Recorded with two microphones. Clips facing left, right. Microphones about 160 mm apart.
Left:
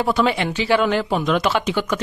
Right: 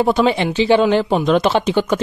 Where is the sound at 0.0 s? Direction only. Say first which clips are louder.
Right 4 dB; 25° right (ahead or behind).